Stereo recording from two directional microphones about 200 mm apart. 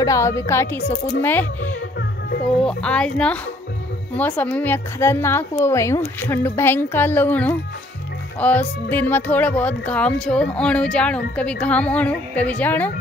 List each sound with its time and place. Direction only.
0.0 s a woman's voice: 15° left (ahead or behind)
2.6 s a woman's voice: 5° left (ahead or behind)